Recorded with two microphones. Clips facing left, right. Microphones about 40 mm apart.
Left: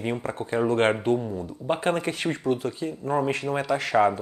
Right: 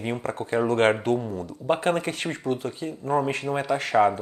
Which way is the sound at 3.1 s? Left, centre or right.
Centre.